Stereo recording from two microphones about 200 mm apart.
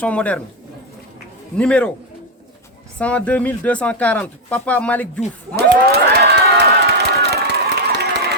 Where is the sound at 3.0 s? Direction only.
5° left (ahead or behind).